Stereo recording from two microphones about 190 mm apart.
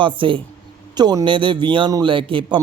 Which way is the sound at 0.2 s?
25° right (ahead or behind).